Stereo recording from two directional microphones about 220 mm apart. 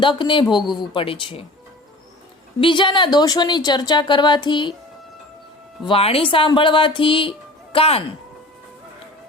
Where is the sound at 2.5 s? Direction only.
20° left (ahead or behind).